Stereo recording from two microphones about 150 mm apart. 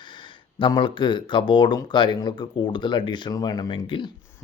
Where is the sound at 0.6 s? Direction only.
35° left (ahead or behind).